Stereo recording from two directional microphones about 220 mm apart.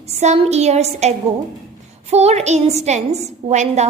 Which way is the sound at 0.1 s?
30° right (ahead or behind).